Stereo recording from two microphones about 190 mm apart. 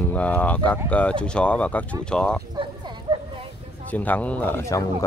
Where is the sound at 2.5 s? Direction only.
25° right (ahead or behind).